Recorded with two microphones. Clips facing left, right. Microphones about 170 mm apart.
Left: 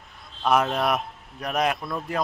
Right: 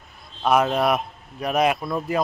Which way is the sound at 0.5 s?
5° right (ahead or behind).